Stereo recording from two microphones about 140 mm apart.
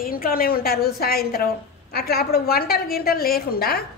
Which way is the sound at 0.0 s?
90° left.